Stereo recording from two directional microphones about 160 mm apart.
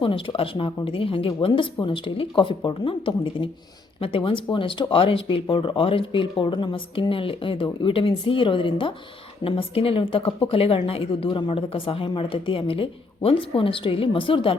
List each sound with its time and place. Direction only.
0.0 s speech: 35° left (ahead or behind)